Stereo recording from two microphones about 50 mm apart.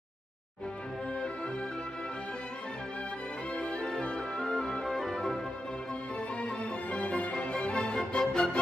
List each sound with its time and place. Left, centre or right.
3.5 s music: centre
6.4 s music: left